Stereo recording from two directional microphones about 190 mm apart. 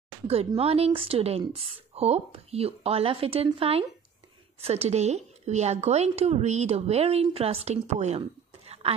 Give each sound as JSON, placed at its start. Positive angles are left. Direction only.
{"t": 0.5, "sound": "a woman's voice", "side_deg": -30}